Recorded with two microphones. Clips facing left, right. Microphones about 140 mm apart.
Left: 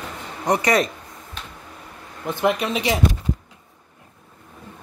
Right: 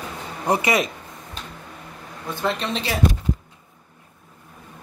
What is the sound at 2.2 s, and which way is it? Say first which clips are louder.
Speech: left 4 dB; 15° left (ahead or behind).